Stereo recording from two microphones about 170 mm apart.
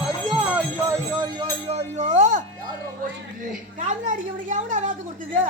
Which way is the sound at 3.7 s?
45° right (ahead or behind).